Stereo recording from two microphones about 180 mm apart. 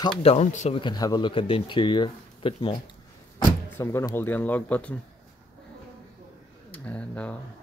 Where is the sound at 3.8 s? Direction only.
15° left (ahead or behind).